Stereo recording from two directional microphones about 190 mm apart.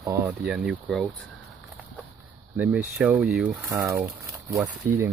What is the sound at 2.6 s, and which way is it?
Speech, 10° right (ahead or behind).